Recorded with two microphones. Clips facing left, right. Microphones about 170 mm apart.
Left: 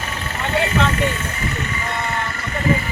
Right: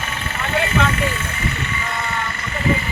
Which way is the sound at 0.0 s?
35° left (ahead or behind).